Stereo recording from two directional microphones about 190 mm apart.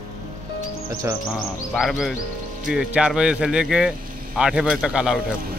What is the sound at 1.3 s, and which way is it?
A woman's voice, centre (ahead or behind).